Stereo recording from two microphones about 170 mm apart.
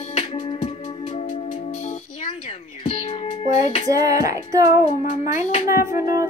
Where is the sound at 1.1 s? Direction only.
40° left (ahead or behind).